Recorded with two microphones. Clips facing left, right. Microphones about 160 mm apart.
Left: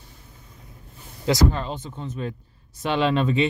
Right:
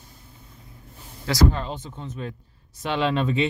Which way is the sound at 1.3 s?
20° left (ahead or behind).